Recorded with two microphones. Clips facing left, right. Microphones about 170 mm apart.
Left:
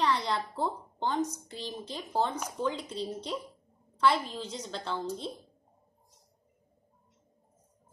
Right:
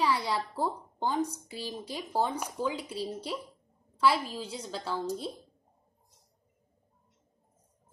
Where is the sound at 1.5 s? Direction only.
10° right (ahead or behind).